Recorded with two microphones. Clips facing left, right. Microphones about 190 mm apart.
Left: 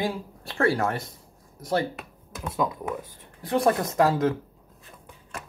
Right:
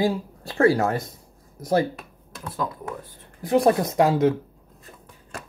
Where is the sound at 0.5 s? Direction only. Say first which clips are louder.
Right 5 dB; 30° right (ahead or behind).